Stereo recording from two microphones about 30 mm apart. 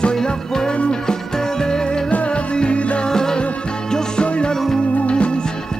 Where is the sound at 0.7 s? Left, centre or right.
Left.